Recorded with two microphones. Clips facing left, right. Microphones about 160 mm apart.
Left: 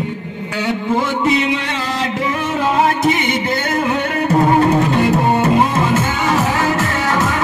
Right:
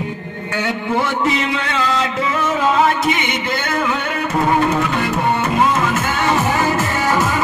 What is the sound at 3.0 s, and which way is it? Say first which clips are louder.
Music: left 3 dB; 40° left (ahead or behind).